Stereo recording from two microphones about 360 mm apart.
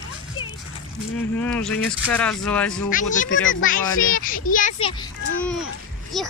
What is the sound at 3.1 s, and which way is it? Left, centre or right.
A child's voice, left.